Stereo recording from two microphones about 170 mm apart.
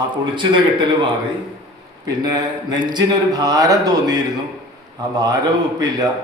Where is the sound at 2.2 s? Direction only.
25° right (ahead or behind).